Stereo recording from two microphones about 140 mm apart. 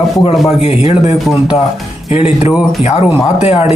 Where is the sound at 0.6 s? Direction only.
50° left (ahead or behind).